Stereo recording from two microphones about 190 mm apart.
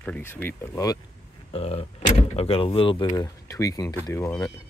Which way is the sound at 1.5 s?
30° left (ahead or behind).